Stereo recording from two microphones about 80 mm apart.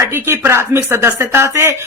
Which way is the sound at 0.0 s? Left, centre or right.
Right.